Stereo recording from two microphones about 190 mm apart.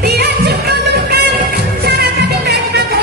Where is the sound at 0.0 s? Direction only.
60° right (ahead or behind).